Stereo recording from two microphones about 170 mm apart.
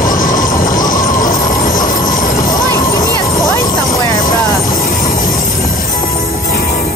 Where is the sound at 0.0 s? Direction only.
50° left (ahead or behind).